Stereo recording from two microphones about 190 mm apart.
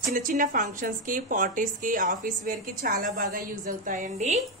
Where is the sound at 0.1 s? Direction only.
45° right (ahead or behind).